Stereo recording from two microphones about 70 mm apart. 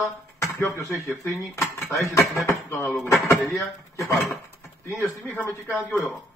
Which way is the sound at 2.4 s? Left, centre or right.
Left.